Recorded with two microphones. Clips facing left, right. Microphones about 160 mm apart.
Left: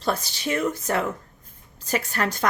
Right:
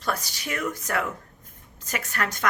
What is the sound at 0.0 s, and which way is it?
A woman's voice, 30° left (ahead or behind).